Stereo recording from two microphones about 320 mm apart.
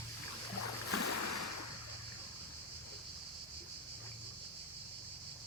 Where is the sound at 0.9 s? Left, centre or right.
Left.